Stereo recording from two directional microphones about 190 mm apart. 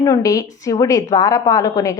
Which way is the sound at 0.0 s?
15° left (ahead or behind).